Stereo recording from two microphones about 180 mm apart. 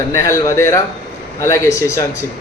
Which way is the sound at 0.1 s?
15° left (ahead or behind).